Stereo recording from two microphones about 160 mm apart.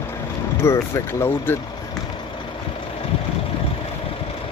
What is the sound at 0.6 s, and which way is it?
Speech, 15° left (ahead or behind).